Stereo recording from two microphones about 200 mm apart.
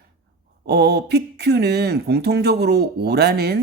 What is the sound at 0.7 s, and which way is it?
Speech, 55° right (ahead or behind).